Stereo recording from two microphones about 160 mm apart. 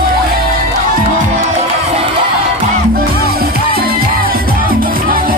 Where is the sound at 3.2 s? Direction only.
75° right (ahead or behind).